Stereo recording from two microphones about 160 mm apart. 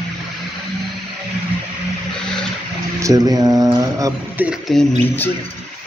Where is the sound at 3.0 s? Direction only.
20° right (ahead or behind).